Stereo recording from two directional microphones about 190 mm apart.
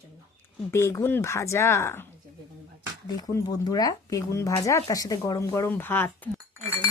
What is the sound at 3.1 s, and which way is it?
Speech, 20° left (ahead or behind).